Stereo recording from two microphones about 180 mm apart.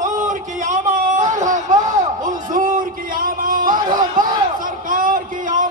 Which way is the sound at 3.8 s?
25° right (ahead or behind).